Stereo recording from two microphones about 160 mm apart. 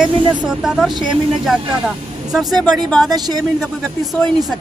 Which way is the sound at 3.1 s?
25° right (ahead or behind).